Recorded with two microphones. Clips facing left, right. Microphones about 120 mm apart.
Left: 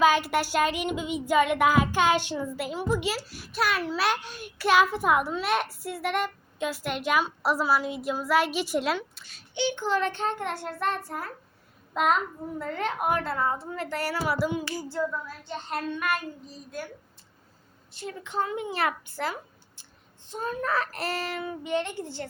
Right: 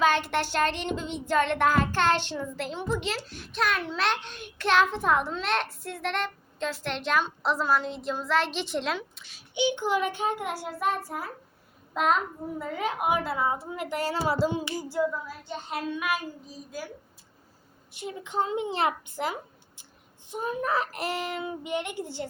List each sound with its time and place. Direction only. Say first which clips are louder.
0.0 s child singing: left 2 dB; 5° left (ahead or behind)
9.6 s a child's voice: right 1 dB; 15° right (ahead or behind)
17.9 s a child's voice: right 1 dB; 15° right (ahead or behind)